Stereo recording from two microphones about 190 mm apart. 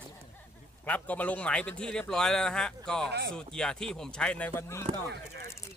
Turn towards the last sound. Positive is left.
turn(degrees=-60)  # may be behind; listen again after turning